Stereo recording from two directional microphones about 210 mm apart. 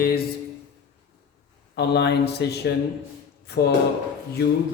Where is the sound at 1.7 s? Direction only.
55° left (ahead or behind).